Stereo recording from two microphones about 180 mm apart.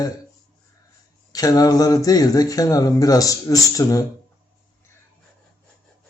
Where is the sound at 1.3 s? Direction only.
20° left (ahead or behind).